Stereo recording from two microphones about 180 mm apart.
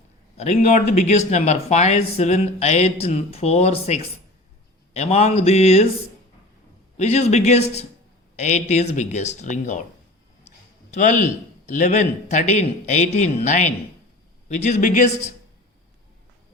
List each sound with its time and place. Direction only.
0.3 s speech: 40° left (ahead or behind)
6.9 s speech: 35° left (ahead or behind)
10.9 s a man's voice: 45° left (ahead or behind)